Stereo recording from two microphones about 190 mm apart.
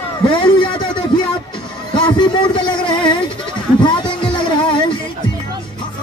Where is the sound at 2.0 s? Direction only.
25° left (ahead or behind).